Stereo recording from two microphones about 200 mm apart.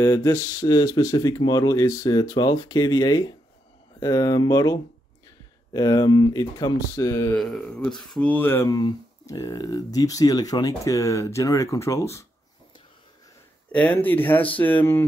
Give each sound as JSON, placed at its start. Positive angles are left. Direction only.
{"t": 0.0, "sound": "speech", "side_deg": 15}
{"t": 7.3, "sound": "speech", "side_deg": 5}
{"t": 13.7, "sound": "speech", "side_deg": 5}